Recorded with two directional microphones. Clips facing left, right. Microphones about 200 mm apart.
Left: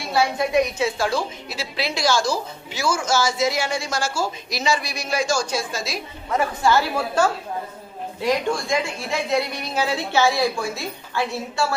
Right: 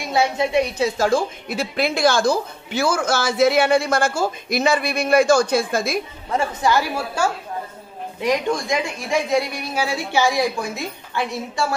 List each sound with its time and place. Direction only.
0.1 s a woman's voice: 25° right (ahead or behind); by 5.9 s 55° right (ahead or behind)
6.6 s a woman's voice: 15° right (ahead or behind)